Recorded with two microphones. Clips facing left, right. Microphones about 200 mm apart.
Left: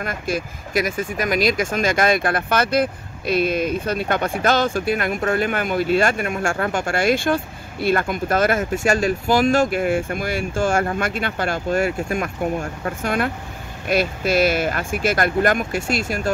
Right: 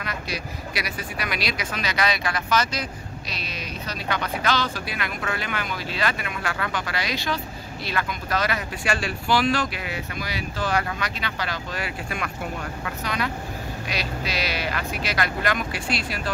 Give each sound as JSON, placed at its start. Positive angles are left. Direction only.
{"t": 0.0, "sound": "speech", "side_deg": 50}